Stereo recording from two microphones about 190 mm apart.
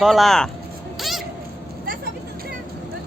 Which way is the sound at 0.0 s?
Centre (ahead or behind).